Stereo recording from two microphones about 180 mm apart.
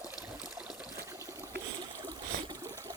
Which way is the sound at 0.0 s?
20° left (ahead or behind).